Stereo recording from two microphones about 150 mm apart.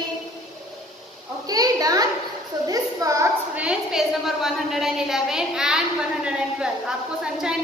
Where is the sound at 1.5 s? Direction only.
25° right (ahead or behind).